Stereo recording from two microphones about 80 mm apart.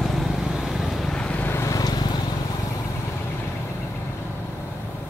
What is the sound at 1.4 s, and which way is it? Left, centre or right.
Vehicle, left.